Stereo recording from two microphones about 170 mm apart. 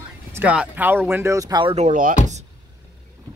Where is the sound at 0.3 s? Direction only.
10° right (ahead or behind); by 1.9 s 30° right (ahead or behind).